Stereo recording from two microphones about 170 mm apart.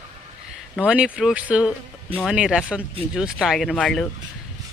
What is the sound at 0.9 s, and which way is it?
Speech, 5° right (ahead or behind).